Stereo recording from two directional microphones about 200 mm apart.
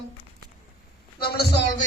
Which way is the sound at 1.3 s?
55° left (ahead or behind).